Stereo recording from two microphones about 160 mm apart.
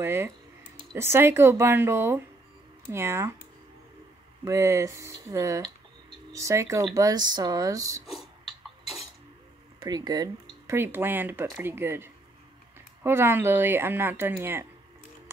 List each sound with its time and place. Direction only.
0.0 s speech: 15° right (ahead or behind)
4.5 s speech: 20° right (ahead or behind)
9.8 s speech: 25° right (ahead or behind)
10.7 s speech: 15° right (ahead or behind)